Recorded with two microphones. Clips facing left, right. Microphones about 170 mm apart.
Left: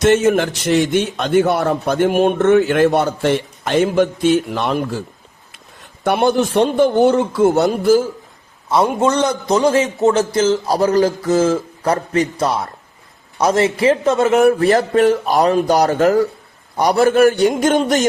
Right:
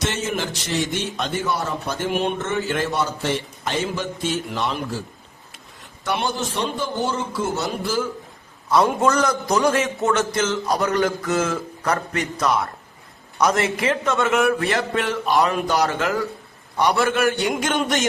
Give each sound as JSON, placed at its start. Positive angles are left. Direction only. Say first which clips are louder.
{"t": 0.0, "sound": "a man's voice", "louder": "left 12 dB", "side_deg": 60}
{"t": 6.1, "sound": "a man's voice", "louder": "left 9 dB", "side_deg": 55}
{"t": 8.7, "sound": "a man's voice", "louder": "left 3 dB", "side_deg": 25}